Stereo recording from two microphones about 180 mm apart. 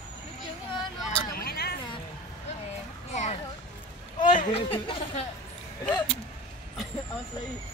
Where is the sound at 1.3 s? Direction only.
55° left (ahead or behind).